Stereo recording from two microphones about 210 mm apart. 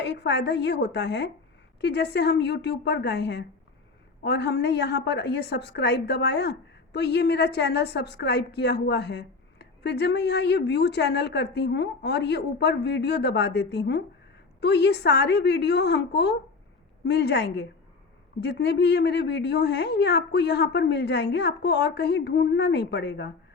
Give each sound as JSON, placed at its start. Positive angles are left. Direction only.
{"t": 0.0, "sound": "a woman's voice", "side_deg": 55}